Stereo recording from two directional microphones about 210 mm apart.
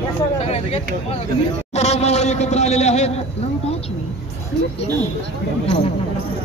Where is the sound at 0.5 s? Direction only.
30° left (ahead or behind).